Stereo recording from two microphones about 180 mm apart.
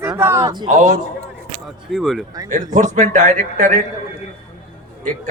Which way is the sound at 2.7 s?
40° right (ahead or behind).